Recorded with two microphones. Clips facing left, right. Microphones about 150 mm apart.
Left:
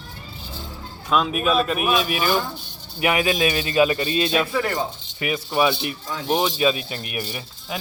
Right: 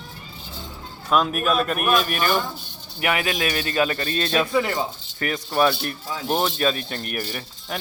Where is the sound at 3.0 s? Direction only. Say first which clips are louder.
Left 3 dB; 20° left (ahead or behind).